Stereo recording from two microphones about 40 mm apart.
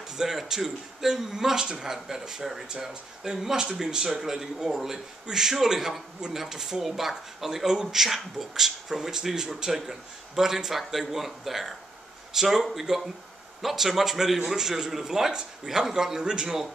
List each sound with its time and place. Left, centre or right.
0.5 s a man's voice: centre